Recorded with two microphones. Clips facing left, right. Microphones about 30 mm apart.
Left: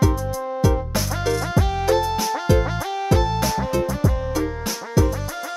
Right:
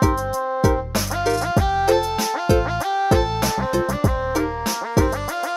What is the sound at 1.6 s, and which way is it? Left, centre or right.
Music, centre.